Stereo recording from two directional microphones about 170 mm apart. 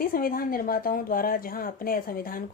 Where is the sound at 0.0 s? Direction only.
55° left (ahead or behind).